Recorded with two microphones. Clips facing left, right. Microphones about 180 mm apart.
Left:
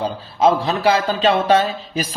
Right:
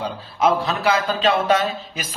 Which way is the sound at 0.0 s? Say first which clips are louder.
Left 4 dB; 30° left (ahead or behind).